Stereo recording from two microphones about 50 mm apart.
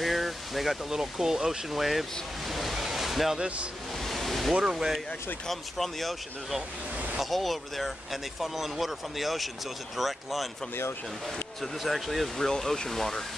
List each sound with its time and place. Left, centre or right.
0.0 s speech: centre
4.0 s a sound: centre
4.6 s speech: centre
5.5 s speech: centre
11.6 s speech: centre